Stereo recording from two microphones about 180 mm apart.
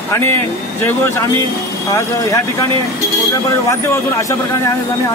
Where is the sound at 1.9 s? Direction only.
15° left (ahead or behind).